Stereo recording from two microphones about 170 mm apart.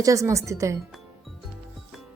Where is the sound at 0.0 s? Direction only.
20° right (ahead or behind).